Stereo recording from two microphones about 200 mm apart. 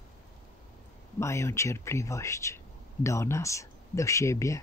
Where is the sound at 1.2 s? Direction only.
15° left (ahead or behind).